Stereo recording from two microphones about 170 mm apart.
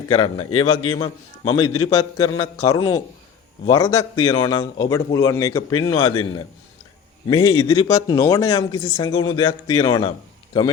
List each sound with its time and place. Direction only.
0.1 s speech: 30° left (ahead or behind)